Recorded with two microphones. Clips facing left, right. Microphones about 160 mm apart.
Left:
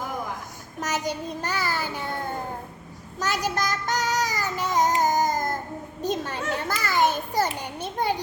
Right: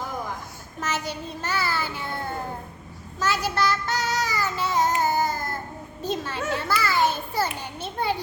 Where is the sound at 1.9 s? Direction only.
40° left (ahead or behind).